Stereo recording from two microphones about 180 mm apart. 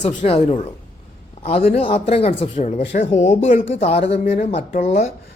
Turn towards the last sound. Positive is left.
turn(degrees=35)  # may be behind; listen again after turning